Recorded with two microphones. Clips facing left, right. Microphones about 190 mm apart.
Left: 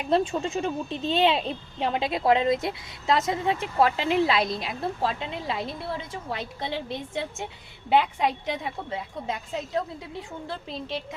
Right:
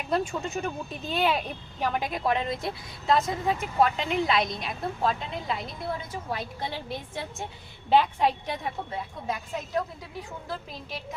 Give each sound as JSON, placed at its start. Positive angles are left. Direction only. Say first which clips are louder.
{"t": 0.1, "sound": "a woman's voice", "louder": "left 4 dB", "side_deg": 30}